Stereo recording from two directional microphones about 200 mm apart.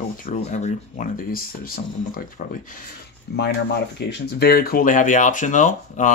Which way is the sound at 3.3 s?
55° left (ahead or behind).